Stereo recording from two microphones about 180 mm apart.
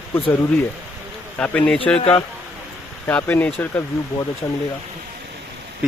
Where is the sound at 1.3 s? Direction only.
10° left (ahead or behind).